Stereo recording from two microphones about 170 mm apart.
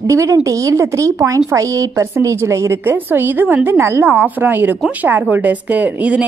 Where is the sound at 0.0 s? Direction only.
20° right (ahead or behind).